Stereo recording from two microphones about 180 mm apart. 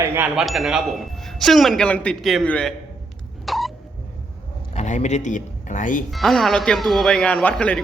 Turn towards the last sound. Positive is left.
turn(degrees=5)  # may be behind; listen again after turning